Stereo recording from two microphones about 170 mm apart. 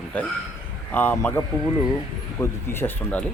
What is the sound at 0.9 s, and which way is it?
Speech, 10° left (ahead or behind).